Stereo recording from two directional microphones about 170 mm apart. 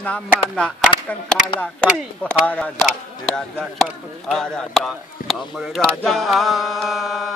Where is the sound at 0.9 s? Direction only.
30° left (ahead or behind).